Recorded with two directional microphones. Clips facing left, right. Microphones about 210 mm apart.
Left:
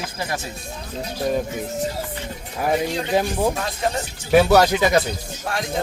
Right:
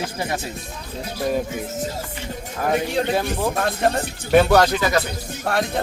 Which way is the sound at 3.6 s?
55° right (ahead or behind).